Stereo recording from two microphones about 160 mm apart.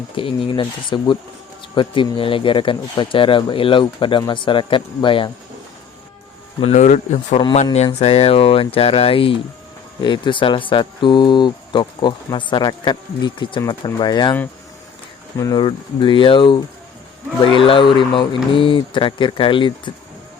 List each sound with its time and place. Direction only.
0.2 s speech: 35° left (ahead or behind)
6.7 s speech: 50° left (ahead or behind); by 14.3 s 25° left (ahead or behind)
15.4 s speech: 25° left (ahead or behind)